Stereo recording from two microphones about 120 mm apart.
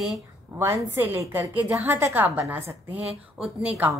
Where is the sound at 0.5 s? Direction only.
25° right (ahead or behind).